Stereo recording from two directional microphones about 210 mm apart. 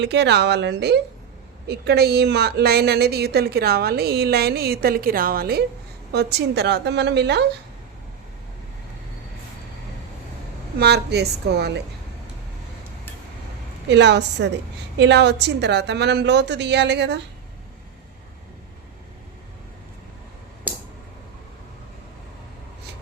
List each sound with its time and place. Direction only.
0.0 s a woman's voice: 55° right (ahead or behind)
10.8 s speech: 50° right (ahead or behind)
13.8 s a woman's voice: 55° right (ahead or behind)